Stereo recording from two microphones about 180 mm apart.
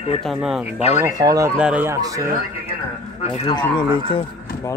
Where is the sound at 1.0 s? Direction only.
20° right (ahead or behind).